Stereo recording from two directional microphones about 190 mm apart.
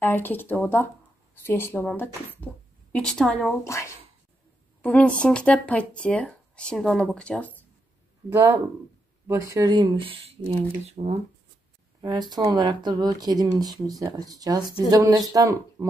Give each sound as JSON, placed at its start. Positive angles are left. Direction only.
{"t": 0.0, "sound": "speech", "side_deg": 10}
{"t": 3.6, "sound": "speech", "side_deg": 15}
{"t": 8.3, "sound": "speech", "side_deg": -10}
{"t": 12.0, "sound": "speech", "side_deg": -20}